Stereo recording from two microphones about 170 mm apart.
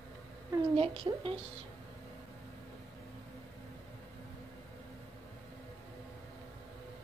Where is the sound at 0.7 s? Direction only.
35° right (ahead or behind).